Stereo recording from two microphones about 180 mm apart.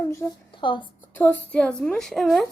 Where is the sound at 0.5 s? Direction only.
25° left (ahead or behind).